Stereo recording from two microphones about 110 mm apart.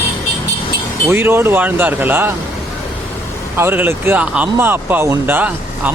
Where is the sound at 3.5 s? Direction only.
20° right (ahead or behind).